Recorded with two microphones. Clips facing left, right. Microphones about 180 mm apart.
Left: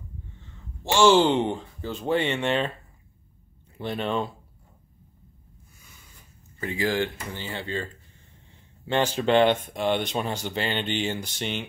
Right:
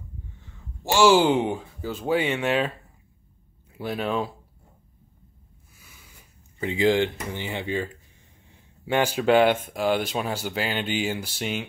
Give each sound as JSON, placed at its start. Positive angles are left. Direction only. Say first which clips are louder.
{"t": 0.4, "sound": "speech", "louder": "even", "side_deg": -10}
{"t": 3.7, "sound": "speech", "louder": "right 1 dB", "side_deg": -5}
{"t": 6.6, "sound": "speech", "louder": "right 5 dB", "side_deg": -20}